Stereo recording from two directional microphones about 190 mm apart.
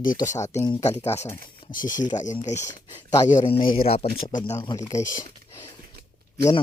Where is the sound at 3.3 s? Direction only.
35° left (ahead or behind).